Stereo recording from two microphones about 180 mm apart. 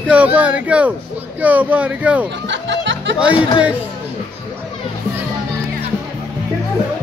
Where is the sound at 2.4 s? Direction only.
80° right.